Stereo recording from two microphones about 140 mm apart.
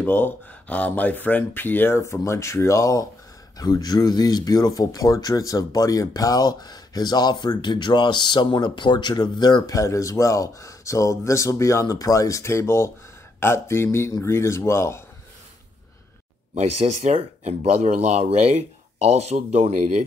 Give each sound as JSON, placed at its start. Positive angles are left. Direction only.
{"t": 0.0, "sound": "speech", "side_deg": 15}
{"t": 16.5, "sound": "speech", "side_deg": -50}